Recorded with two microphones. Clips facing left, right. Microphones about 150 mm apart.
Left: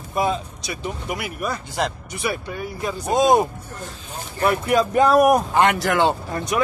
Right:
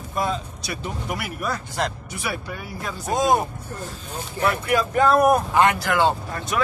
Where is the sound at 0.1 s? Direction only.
5° left (ahead or behind).